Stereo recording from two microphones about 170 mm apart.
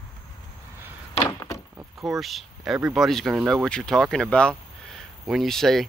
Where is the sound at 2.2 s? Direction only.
Centre (ahead or behind).